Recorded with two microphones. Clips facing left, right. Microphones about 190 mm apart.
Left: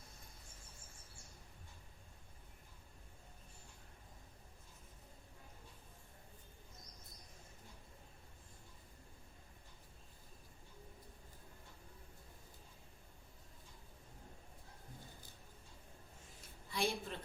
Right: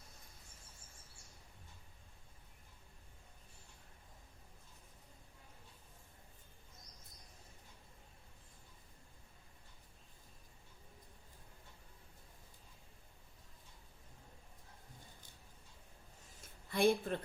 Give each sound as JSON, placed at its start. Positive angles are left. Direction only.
{"t": 16.6, "sound": "speech", "side_deg": -55}